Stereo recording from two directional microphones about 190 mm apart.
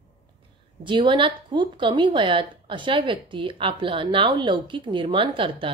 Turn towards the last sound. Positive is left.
turn(degrees=-25)  # may be behind; listen again after turning